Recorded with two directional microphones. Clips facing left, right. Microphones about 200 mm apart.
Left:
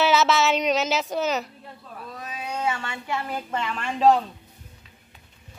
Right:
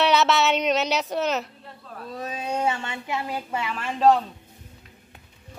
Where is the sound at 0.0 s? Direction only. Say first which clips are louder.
Even; centre (ahead or behind).